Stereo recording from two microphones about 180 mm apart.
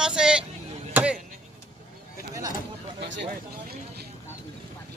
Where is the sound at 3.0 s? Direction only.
70° right (ahead or behind).